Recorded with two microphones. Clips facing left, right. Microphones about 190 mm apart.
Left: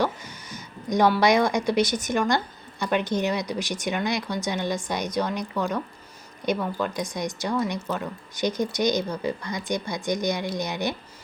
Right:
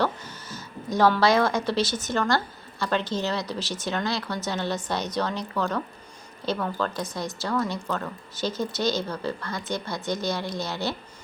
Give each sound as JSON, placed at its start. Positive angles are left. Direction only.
{"t": 0.5, "sound": "a woman's voice", "side_deg": 15}